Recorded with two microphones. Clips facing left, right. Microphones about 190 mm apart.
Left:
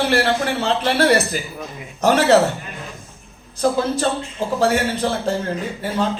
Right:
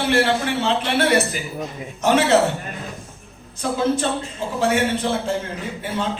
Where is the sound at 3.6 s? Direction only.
35° left (ahead or behind).